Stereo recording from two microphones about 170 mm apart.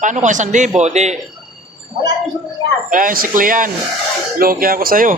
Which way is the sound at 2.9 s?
55° right (ahead or behind).